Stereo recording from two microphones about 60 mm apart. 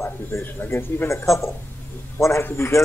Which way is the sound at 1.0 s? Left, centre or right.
Left.